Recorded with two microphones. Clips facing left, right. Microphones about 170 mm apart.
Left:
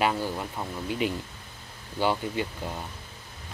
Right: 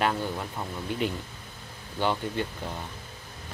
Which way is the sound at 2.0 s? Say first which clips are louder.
Left 1 dB; 10° left (ahead or behind).